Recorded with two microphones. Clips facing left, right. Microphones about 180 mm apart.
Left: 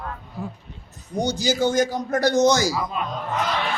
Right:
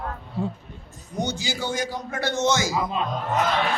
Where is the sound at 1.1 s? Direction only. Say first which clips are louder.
Left 6 dB; 35° left (ahead or behind).